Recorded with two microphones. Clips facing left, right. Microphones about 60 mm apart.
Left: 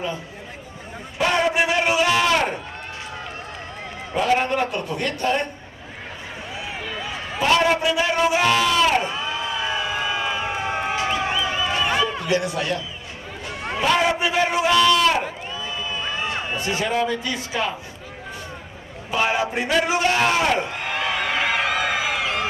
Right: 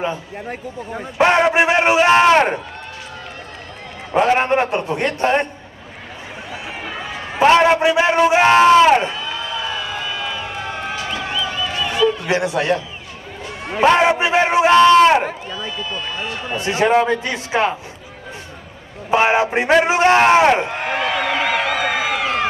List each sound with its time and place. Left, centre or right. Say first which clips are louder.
1.1 s a man's voice: right 6 dB; right
4.1 s a man's voice: right 5 dB; right
6.8 s a man's voice: right 3 dB; right
9.1 s crowd: right 1 dB; centre
11.0 s a sound: left 1 dB; left
11.7 s a sound: right 6 dB; left
12.3 s a man's voice: right 5 dB; right
15.8 s speech: right 1 dB; centre
16.6 s a man's voice: right 8 dB; right
19.0 s a man's voice: right 7 dB; right
21.1 s a sound: right 2 dB; centre
22.0 s a sound: right 4 dB; right